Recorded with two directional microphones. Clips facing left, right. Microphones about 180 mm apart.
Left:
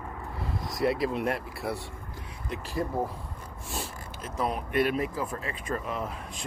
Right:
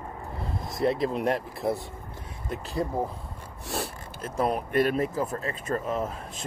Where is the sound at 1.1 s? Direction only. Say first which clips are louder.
Right 3 dB; 40° right (ahead or behind).